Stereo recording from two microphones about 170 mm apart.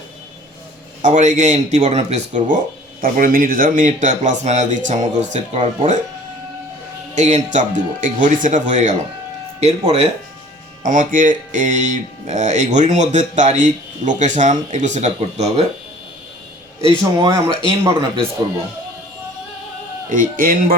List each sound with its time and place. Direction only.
1.0 s speech: 45° right (ahead or behind)
3.0 s speech: 55° right (ahead or behind)
7.2 s speech: 45° right (ahead or behind)
10.8 s speech: 50° right (ahead or behind)
17.0 s speech: 25° right (ahead or behind)
20.1 s speech: 55° right (ahead or behind)